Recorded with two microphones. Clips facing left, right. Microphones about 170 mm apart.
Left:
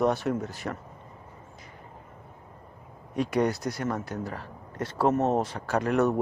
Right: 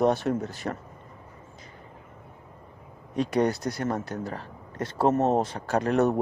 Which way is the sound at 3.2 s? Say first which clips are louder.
Right 1 dB; 25° right (ahead or behind).